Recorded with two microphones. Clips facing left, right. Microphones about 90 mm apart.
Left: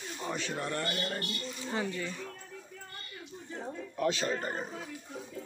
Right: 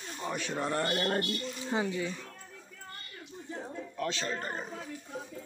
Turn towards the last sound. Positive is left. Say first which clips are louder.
# left 3 dB
turn(degrees=10)  # may be behind; listen again after turning